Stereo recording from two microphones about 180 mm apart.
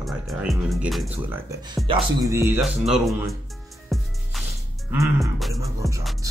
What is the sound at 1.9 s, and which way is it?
Speech, 25° right (ahead or behind).